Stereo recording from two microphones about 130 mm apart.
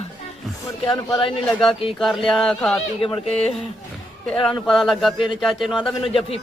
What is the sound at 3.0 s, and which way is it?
Speech, 40° left (ahead or behind).